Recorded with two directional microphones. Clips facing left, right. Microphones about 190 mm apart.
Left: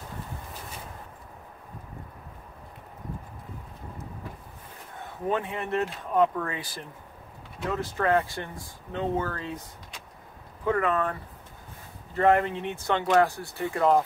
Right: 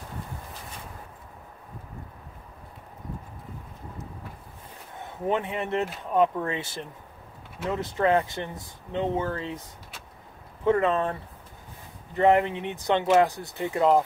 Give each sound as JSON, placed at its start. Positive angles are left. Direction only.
{"t": 5.3, "sound": "speech", "side_deg": -20}
{"t": 10.6, "sound": "speech", "side_deg": -25}